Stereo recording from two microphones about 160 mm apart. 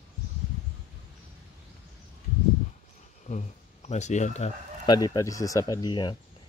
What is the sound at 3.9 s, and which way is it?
Speech, 45° left (ahead or behind).